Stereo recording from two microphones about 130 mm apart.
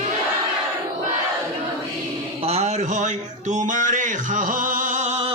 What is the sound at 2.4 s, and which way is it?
Music, 55° right (ahead or behind).